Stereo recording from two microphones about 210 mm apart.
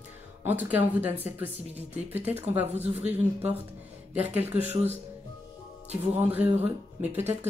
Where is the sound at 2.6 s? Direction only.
30° right (ahead or behind).